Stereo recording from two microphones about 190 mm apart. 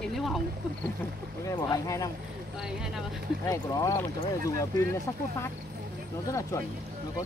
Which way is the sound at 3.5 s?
20° left (ahead or behind).